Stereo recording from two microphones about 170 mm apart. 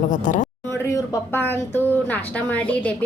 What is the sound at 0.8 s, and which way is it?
A woman's voice, 20° left (ahead or behind).